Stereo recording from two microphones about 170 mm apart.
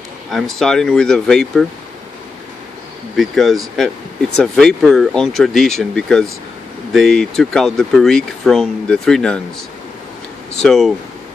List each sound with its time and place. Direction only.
0.3 s speech: centre (ahead or behind)
3.2 s speech: centre (ahead or behind)
10.5 s speech: 5° left (ahead or behind)